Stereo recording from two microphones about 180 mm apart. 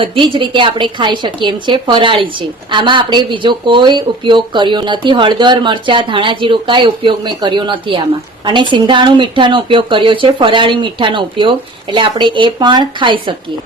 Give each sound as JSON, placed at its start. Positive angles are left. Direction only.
{"t": 0.0, "sound": "speech", "side_deg": -25}